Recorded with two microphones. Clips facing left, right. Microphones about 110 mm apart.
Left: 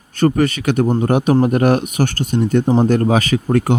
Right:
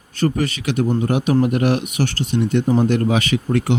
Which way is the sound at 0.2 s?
50° left (ahead or behind).